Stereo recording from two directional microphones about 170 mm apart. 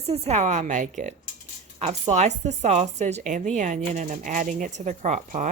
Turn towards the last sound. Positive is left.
turn(degrees=-45)  # may be behind; listen again after turning